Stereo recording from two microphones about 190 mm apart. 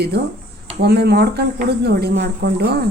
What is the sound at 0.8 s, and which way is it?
Speech, 60° right (ahead or behind).